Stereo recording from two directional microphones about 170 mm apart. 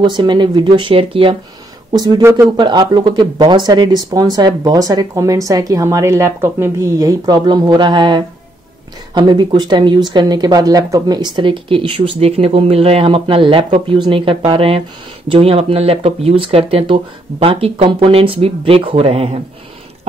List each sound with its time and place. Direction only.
0.0 s speech: 25° right (ahead or behind)